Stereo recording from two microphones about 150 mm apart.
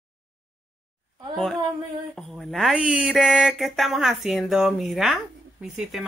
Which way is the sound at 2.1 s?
Centre (ahead or behind).